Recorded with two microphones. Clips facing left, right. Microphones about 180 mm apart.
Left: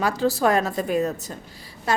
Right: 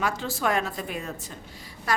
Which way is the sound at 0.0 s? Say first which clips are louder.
Left 7 dB; 35° left (ahead or behind).